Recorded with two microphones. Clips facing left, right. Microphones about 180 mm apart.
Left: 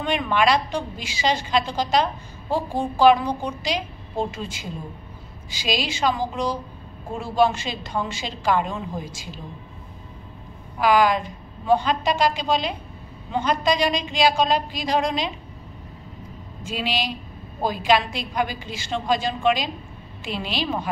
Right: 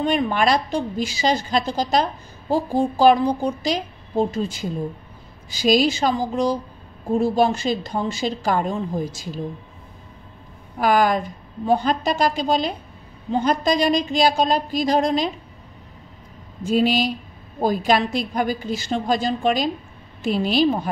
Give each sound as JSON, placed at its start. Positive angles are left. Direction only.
{"t": 0.0, "sound": "a child's voice", "side_deg": -40}
{"t": 10.8, "sound": "a woman's voice", "side_deg": -50}
{"t": 16.7, "sound": "a woman's voice", "side_deg": -45}